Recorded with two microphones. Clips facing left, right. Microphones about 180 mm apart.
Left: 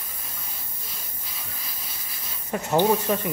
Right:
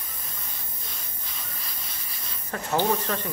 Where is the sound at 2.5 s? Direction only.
15° left (ahead or behind).